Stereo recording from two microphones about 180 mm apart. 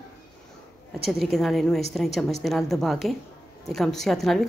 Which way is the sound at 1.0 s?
Centre (ahead or behind).